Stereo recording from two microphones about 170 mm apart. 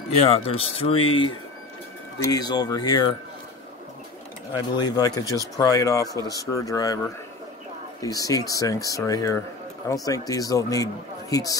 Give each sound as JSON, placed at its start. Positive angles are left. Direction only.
{"t": 0.2, "sound": "speech", "side_deg": 35}
{"t": 2.3, "sound": "speech", "side_deg": 25}
{"t": 4.7, "sound": "speech", "side_deg": 25}
{"t": 8.0, "sound": "speech", "side_deg": 20}